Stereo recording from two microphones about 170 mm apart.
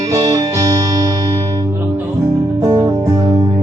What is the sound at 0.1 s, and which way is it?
Music, 25° right (ahead or behind).